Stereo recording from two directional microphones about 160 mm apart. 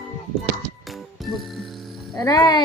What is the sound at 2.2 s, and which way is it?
Music, 25° left (ahead or behind).